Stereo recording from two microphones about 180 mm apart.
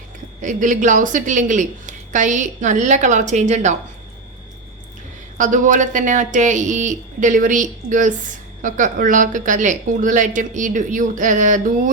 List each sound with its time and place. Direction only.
0.4 s a woman's voice: 45° right (ahead or behind)
5.4 s a woman's voice: 45° right (ahead or behind)